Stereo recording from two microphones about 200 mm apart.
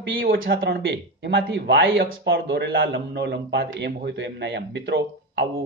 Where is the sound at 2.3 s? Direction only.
70° right (ahead or behind).